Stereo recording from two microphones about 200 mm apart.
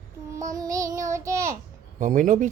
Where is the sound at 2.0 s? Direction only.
40° right (ahead or behind).